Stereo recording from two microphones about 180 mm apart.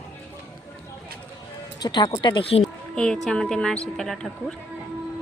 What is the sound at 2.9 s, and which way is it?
Speech, 5° left (ahead or behind).